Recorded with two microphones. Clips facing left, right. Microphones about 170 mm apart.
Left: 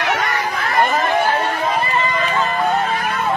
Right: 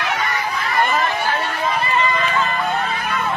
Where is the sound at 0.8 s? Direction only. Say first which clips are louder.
Left 3 dB; 50° left (ahead or behind).